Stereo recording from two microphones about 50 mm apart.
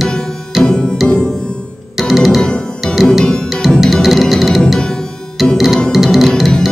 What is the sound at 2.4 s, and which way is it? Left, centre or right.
Music, centre.